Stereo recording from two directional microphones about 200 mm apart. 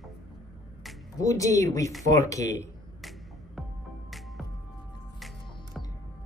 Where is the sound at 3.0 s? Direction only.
Centre (ahead or behind).